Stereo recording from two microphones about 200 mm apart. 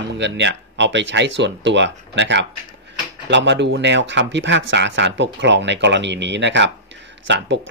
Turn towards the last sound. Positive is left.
turn(degrees=-65)  # may be behind; listen again after turning